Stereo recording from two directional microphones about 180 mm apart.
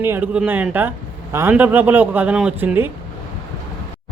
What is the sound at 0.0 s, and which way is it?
Speech, 10° right (ahead or behind).